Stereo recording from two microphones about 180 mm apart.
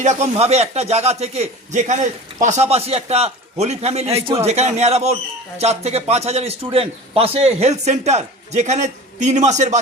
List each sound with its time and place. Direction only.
0.0 s a man's voice: 40° right (ahead or behind)